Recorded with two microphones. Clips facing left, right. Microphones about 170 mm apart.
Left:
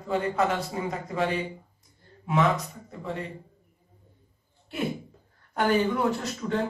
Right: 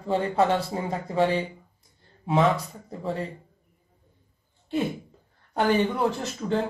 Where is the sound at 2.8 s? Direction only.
35° right (ahead or behind).